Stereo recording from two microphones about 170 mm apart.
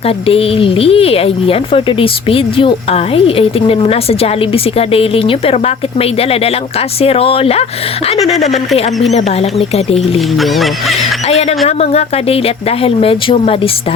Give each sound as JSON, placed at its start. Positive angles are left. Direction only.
{"t": 0.3, "sound": "speech", "side_deg": 35}
{"t": 9.1, "sound": "speech", "side_deg": 40}
{"t": 10.3, "sound": "music", "side_deg": 0}
{"t": 11.3, "sound": "speech", "side_deg": 40}